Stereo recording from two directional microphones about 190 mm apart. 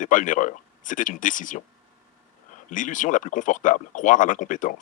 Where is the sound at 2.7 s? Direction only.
40° left (ahead or behind).